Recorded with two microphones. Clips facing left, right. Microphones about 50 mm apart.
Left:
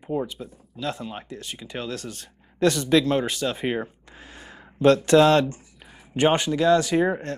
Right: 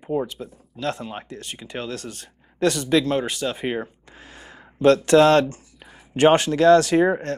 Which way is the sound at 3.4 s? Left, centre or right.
Centre.